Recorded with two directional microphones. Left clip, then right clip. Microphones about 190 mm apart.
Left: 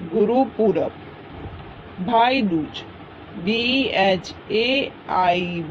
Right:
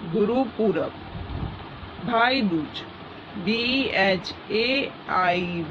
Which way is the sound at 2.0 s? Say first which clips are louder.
Left 4 dB; 20° left (ahead or behind).